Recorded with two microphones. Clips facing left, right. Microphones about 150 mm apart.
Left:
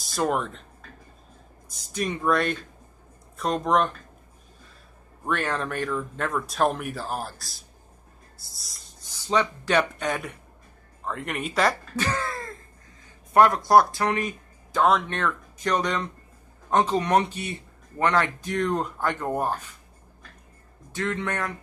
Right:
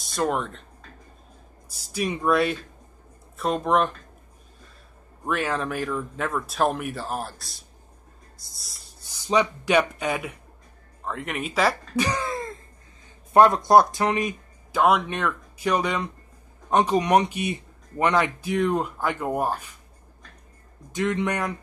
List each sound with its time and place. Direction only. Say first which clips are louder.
0.0 s speech: even; centre (ahead or behind)
1.9 s speech: right 1 dB; 10° right (ahead or behind)
5.2 s speech: right 1 dB; centre (ahead or behind)
9.0 s speech: right 2 dB; 15° right (ahead or behind)
11.9 s speech: right 3 dB; 15° right (ahead or behind)
20.9 s speech: right 4 dB; 15° right (ahead or behind)